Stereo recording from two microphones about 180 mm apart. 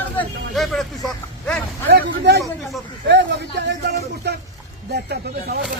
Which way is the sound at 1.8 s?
65° right (ahead or behind).